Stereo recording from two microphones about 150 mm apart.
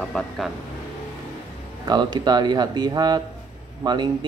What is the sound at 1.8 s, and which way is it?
Speech, 30° right (ahead or behind).